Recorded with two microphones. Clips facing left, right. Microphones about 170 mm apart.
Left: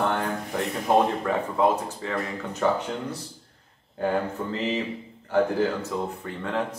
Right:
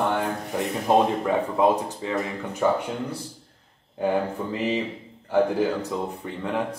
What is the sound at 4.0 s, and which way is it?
Speech, 15° right (ahead or behind).